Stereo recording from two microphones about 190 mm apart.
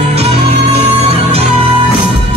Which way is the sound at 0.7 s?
30° right (ahead or behind).